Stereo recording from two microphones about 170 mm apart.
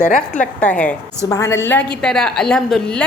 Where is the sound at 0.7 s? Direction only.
10° left (ahead or behind).